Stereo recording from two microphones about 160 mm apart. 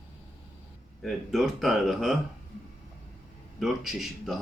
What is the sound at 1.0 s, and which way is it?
Speech, centre (ahead or behind).